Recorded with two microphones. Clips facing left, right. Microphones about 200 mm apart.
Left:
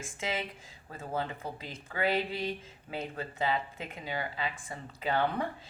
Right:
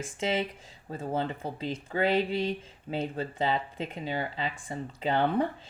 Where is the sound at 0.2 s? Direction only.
30° right (ahead or behind).